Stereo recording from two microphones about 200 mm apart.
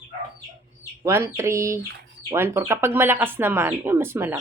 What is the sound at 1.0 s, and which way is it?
Speech, 15° right (ahead or behind).